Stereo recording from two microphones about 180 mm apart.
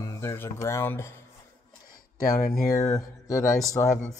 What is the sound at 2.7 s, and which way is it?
Mantra, 15° left (ahead or behind).